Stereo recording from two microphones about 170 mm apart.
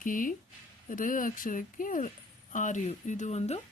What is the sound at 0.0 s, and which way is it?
Speech, 50° left (ahead or behind).